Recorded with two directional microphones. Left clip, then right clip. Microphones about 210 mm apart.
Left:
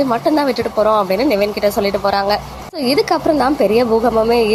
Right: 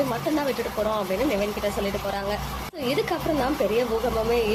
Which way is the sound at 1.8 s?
35° left (ahead or behind).